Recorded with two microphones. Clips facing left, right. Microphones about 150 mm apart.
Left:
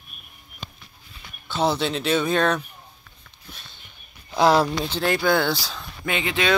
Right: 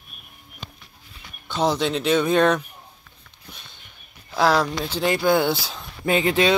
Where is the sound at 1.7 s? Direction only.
15° right (ahead or behind).